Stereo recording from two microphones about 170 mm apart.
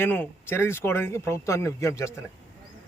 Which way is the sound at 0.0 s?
10° left (ahead or behind).